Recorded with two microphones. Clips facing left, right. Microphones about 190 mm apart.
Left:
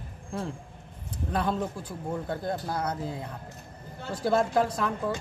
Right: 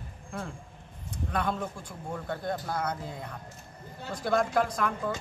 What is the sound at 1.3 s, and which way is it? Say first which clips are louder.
Speech: left 3 dB; 30° left (ahead or behind).